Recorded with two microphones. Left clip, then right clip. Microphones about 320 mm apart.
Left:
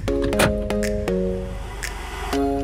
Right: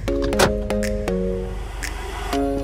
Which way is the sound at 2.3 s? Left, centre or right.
Centre.